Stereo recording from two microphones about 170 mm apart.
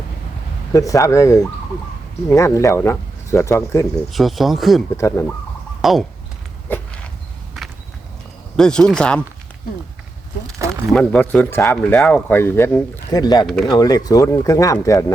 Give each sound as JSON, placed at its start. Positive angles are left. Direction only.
{"t": 0.7, "sound": "speech", "side_deg": 20}
{"t": 4.1, "sound": "speech", "side_deg": 0}
{"t": 4.9, "sound": "speech", "side_deg": 15}
{"t": 5.8, "sound": "speech", "side_deg": 0}
{"t": 6.7, "sound": "walk", "side_deg": 10}
{"t": 8.5, "sound": "speech", "side_deg": 5}
{"t": 10.9, "sound": "speech", "side_deg": 10}
{"t": 13.4, "sound": "speech", "side_deg": 0}
{"t": 13.7, "sound": "speech", "side_deg": 25}